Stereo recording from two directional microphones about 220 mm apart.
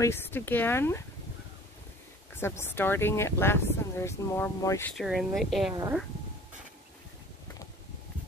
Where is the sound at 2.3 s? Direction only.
10° left (ahead or behind).